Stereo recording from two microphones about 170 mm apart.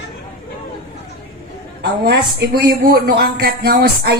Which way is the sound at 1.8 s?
65° right (ahead or behind).